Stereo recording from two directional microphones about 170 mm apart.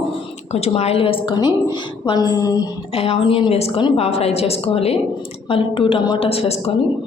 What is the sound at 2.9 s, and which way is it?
A woman's voice, 35° left (ahead or behind).